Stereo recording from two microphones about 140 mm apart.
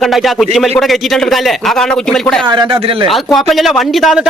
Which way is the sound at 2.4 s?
35° right (ahead or behind).